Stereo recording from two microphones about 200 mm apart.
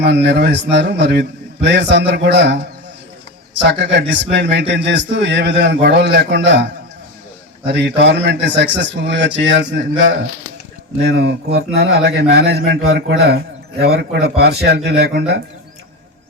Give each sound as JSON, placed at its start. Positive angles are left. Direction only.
{"t": 0.0, "sound": "a man's voice", "side_deg": -60}
{"t": 11.0, "sound": "speech", "side_deg": -50}